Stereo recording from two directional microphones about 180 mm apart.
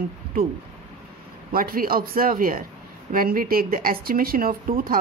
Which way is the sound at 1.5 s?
50° right (ahead or behind).